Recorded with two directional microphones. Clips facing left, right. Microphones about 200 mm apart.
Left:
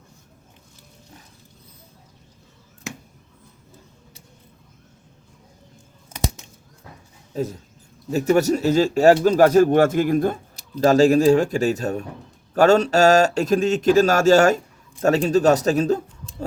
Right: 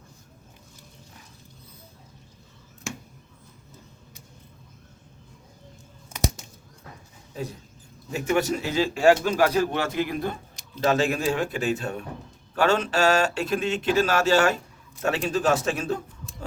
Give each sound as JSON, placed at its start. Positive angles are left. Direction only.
{"t": 8.1, "sound": "a man's voice", "side_deg": 40}